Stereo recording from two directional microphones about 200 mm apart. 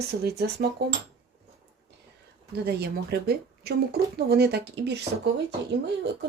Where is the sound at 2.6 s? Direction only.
50° right (ahead or behind).